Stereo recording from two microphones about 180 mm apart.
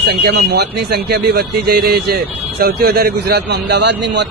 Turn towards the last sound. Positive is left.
turn(degrees=-70)  # may be behind; listen again after turning